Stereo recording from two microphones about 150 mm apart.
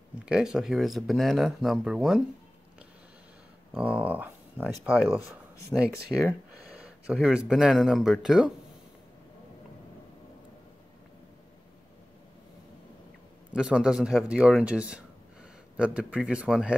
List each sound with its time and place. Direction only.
0.2 s speech: 5° right (ahead or behind)
3.7 s speech: 10° right (ahead or behind)
13.6 s speech: 5° right (ahead or behind)